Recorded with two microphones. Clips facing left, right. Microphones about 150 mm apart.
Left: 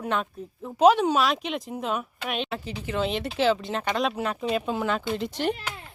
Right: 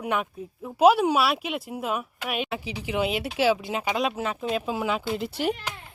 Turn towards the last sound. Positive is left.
turn(degrees=-10)  # may be behind; listen again after turning